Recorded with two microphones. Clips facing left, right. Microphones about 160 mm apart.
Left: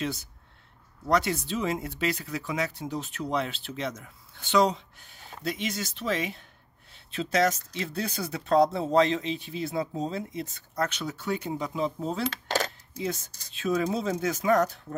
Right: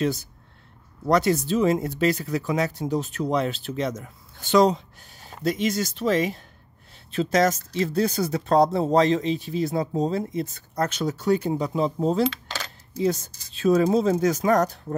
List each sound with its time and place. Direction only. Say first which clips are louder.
0.0 s speech: right 7 dB; 40° right (ahead or behind)
12.3 s coin: left 2 dB; 50° left (ahead or behind)
12.9 s speech: right 13 dB; 35° right (ahead or behind)